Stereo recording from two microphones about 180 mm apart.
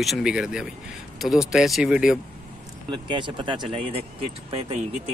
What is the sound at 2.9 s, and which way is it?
Speech, 25° right (ahead or behind).